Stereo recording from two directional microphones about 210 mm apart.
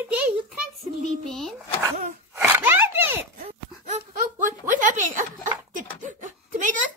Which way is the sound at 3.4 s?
35° right (ahead or behind).